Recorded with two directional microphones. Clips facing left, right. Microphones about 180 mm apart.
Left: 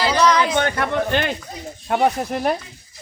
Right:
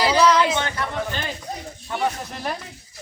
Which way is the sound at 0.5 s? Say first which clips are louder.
Left 5 dB; 55° left (ahead or behind).